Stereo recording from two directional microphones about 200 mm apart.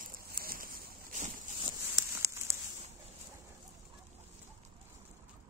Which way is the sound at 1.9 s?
15° right (ahead or behind).